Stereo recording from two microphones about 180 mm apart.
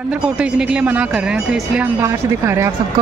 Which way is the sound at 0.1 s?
5° right (ahead or behind).